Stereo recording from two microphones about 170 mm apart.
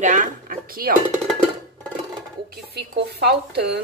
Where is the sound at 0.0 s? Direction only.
50° right (ahead or behind).